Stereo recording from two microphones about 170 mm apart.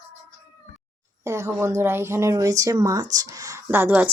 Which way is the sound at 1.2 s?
15° right (ahead or behind).